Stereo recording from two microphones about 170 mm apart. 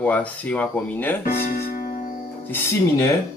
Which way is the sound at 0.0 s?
10° left (ahead or behind).